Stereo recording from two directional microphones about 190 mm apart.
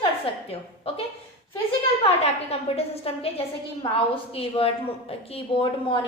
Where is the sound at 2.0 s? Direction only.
30° left (ahead or behind).